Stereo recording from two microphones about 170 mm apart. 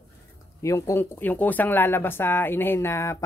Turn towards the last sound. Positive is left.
turn(degrees=15)  # may be behind; listen again after turning